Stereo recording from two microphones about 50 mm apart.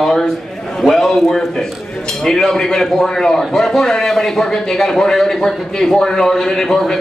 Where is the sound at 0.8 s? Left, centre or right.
Centre.